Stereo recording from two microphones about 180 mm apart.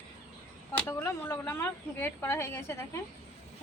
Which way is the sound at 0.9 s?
10° left (ahead or behind).